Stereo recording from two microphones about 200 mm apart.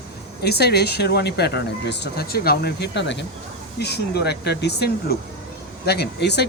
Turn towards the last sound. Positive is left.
turn(degrees=55)  # may be behind; listen again after turning